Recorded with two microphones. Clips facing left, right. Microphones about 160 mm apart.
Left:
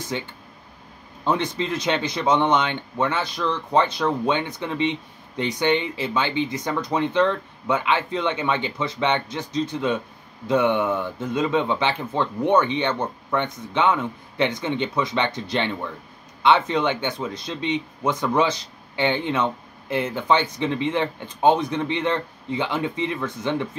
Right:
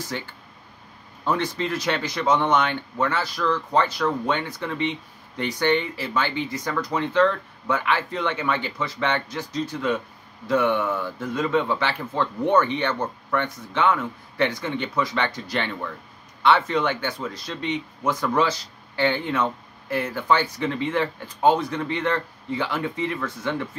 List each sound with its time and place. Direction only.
0.1 s speech: 20° left (ahead or behind)